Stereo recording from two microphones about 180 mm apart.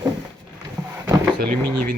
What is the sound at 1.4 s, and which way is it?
Speech, 55° right (ahead or behind).